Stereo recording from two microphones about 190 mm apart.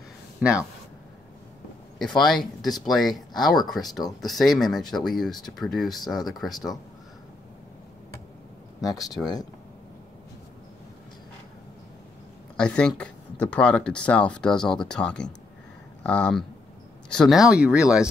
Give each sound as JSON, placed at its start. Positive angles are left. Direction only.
{"t": 0.4, "sound": "speech", "side_deg": -5}
{"t": 2.0, "sound": "speech", "side_deg": 0}
{"t": 9.2, "sound": "speech", "side_deg": 20}
{"t": 12.5, "sound": "speech", "side_deg": 5}